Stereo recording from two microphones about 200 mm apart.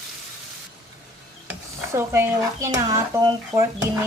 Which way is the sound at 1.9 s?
15° right (ahead or behind).